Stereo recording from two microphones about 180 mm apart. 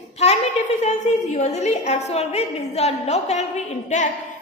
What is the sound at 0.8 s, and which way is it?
A woman's voice, 40° left (ahead or behind).